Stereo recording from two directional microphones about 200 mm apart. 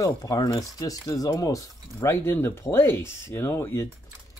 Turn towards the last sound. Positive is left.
turn(degrees=10)  # may be behind; listen again after turning